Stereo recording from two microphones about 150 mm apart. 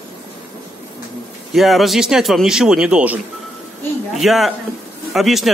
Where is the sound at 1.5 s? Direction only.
Centre (ahead or behind).